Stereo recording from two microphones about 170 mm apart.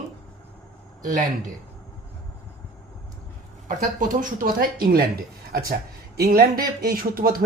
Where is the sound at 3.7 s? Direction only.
50° right (ahead or behind).